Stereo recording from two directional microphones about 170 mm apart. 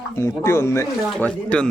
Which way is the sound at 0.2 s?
15° left (ahead or behind).